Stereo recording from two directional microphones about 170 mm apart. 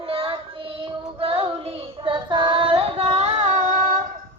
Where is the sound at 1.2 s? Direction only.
35° right (ahead or behind).